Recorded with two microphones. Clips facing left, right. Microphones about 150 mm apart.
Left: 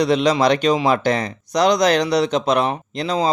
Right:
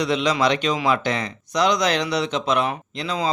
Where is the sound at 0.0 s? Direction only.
40° left (ahead or behind).